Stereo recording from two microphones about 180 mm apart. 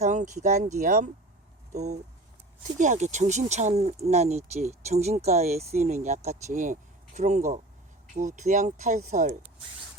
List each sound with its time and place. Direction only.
0.0 s speech: 40° right (ahead or behind)